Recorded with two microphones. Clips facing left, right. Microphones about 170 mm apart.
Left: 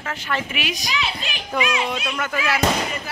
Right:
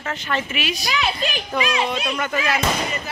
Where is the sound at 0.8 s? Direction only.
50° right (ahead or behind).